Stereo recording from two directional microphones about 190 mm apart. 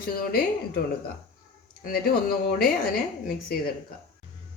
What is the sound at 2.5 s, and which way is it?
Speech, 50° left (ahead or behind).